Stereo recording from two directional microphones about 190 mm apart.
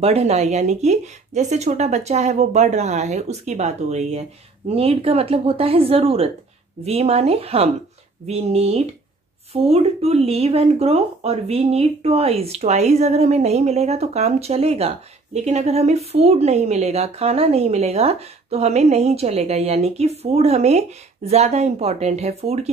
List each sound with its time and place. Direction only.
0.0 s speech: 35° right (ahead or behind)